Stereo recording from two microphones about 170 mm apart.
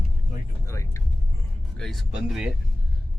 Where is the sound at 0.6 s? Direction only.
20° left (ahead or behind).